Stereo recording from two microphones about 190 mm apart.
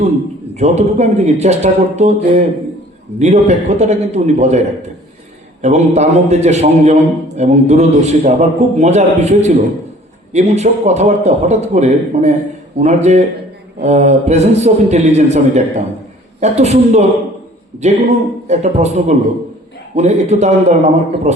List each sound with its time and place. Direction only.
0.5 s a man's voice: 35° right (ahead or behind)
3.2 s a man's voice: 35° right (ahead or behind)
5.6 s a man's voice: 35° right (ahead or behind)